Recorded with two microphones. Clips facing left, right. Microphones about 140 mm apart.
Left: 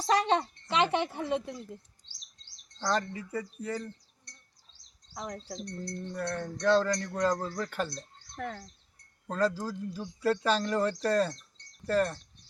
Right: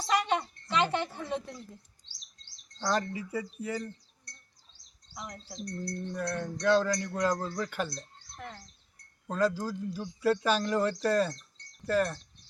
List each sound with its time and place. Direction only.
0.1 s speech: 30° left (ahead or behind)
2.7 s speech: 10° right (ahead or behind)
5.1 s speech: 40° left (ahead or behind)
5.9 s speech: 5° right (ahead or behind)
9.3 s speech: centre (ahead or behind)